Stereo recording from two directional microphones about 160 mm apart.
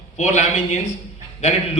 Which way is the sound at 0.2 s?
45° left (ahead or behind).